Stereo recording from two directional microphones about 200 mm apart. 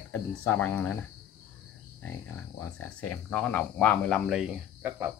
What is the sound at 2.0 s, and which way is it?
Speech, 90° left.